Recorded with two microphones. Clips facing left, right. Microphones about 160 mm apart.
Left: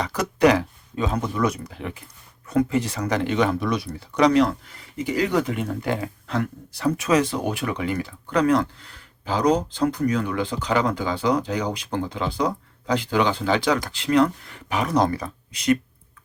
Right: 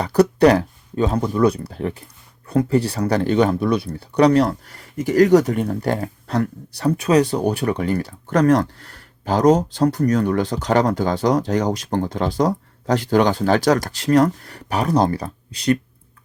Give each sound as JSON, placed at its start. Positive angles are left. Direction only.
{"t": 0.0, "sound": "speech", "side_deg": -35}